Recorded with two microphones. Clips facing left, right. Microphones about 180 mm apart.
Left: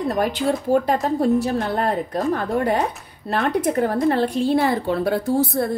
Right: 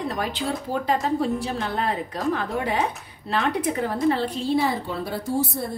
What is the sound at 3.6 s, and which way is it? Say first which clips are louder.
A woman's voice: left 4 dB; 55° left (ahead or behind).